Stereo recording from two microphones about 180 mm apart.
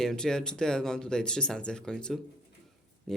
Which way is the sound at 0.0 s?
5° left (ahead or behind).